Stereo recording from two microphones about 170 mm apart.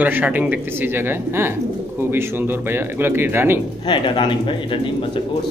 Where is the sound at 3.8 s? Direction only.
30° left (ahead or behind).